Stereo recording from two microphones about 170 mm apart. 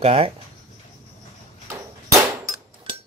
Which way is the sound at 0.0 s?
35° right (ahead or behind).